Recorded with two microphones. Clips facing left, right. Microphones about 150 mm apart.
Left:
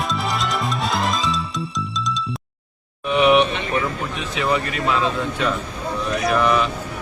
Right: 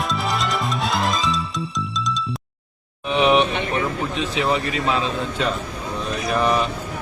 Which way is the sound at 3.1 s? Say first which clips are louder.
Left 2 dB; 30° right (ahead or behind).